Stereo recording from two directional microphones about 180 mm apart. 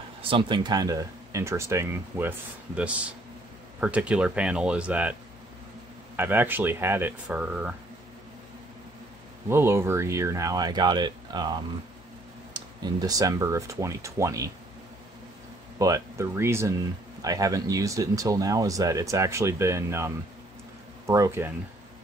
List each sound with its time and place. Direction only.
0.2 s speech: 30° right (ahead or behind); by 5.1 s 5° right (ahead or behind)
6.1 s speech: 10° right (ahead or behind)
9.5 s speech: 15° right (ahead or behind)
12.5 s speech: 20° right (ahead or behind)
15.8 s speech: 15° right (ahead or behind)
21.1 s speech: 20° right (ahead or behind)